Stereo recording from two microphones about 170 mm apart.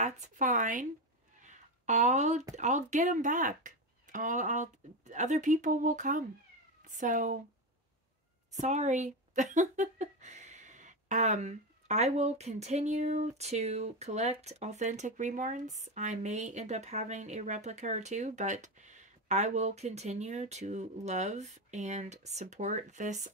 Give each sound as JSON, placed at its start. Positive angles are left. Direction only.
{"t": 0.0, "sound": "speech", "side_deg": -50}
{"t": 1.4, "sound": "a sound", "side_deg": -45}
{"t": 2.5, "sound": "speech", "side_deg": -45}
{"t": 8.5, "sound": "speech", "side_deg": -40}